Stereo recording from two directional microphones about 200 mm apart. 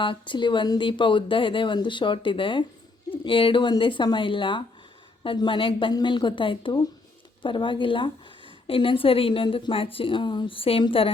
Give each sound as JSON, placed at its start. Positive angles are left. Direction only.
{"t": 0.0, "sound": "speech", "side_deg": 25}